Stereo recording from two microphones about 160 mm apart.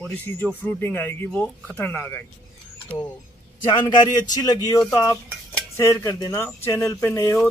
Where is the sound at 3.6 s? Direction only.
30° left (ahead or behind).